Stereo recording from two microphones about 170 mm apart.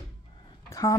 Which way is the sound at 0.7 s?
15° left (ahead or behind).